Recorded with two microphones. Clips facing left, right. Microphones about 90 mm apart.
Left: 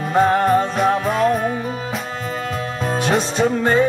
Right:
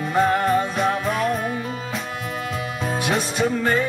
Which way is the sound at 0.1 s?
25° left (ahead or behind).